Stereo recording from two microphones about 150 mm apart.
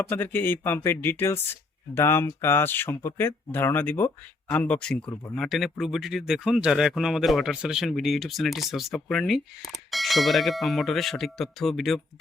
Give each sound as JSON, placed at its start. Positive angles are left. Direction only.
{"t": 0.1, "sound": "speech", "side_deg": 15}